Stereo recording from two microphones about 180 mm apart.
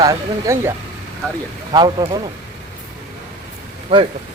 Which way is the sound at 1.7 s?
25° right (ahead or behind).